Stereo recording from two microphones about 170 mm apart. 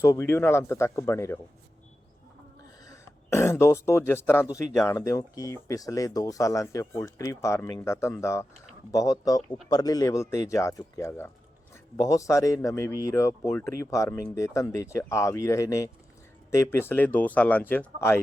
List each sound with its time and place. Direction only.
0.0 s speech: 15° left (ahead or behind)
2.8 s speech: 15° left (ahead or behind)